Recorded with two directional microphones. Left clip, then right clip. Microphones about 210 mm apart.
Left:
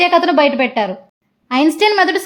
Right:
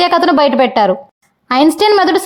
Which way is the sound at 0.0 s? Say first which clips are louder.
Right 1 dB; 20° right (ahead or behind).